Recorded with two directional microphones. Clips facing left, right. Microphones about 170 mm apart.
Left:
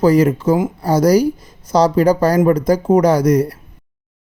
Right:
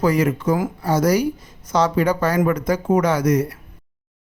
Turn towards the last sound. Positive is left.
turn(degrees=35)  # may be behind; listen again after turning